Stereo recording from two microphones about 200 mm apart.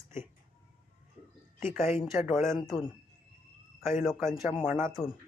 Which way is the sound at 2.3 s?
15° right (ahead or behind).